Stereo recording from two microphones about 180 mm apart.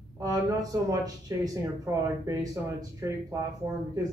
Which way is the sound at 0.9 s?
20° right (ahead or behind).